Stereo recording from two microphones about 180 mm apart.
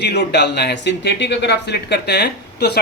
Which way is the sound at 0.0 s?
65° left (ahead or behind).